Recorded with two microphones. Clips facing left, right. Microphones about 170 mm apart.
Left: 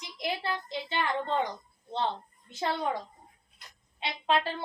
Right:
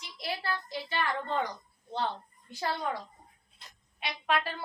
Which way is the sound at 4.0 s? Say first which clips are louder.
Left 3 dB; 25° left (ahead or behind).